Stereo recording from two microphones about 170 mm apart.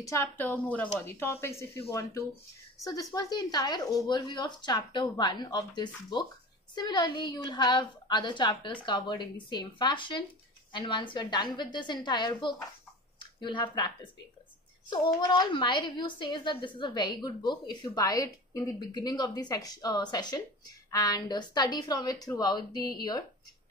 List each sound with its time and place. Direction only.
0.0 s a woman's voice: 15° left (ahead or behind)